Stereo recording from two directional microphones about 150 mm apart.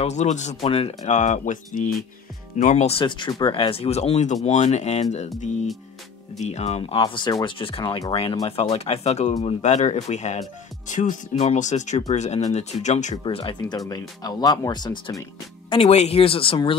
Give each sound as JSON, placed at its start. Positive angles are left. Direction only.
{"t": 0.0, "sound": "speech", "side_deg": 50}
{"t": 6.4, "sound": "speech", "side_deg": 50}
{"t": 6.8, "sound": "speech", "side_deg": 40}
{"t": 13.2, "sound": "speech", "side_deg": 35}
{"t": 15.7, "sound": "speech", "side_deg": 45}